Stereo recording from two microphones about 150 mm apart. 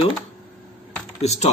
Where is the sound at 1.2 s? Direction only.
45° left (ahead or behind).